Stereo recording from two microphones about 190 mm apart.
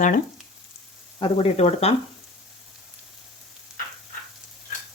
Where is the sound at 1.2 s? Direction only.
30° left (ahead or behind).